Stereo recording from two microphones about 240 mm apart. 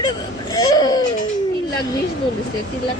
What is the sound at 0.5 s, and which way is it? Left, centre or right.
Speech, centre.